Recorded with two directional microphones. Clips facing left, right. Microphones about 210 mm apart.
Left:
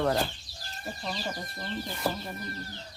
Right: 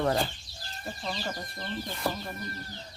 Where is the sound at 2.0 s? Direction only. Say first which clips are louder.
Left 1 dB; centre (ahead or behind).